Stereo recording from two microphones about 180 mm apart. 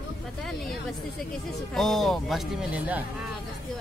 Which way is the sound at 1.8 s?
Centre (ahead or behind).